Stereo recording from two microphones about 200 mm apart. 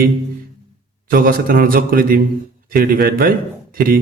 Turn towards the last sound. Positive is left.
turn(degrees=-45)  # may be behind; listen again after turning